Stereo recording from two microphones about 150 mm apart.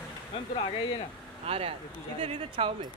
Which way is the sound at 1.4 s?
40° right (ahead or behind).